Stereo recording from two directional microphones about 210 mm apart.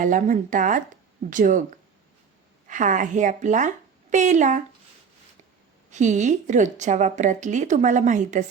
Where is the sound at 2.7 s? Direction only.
35° right (ahead or behind).